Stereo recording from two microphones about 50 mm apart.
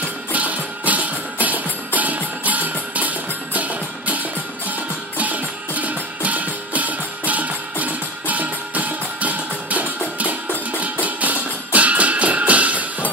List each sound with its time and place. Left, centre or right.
0.3 s music: right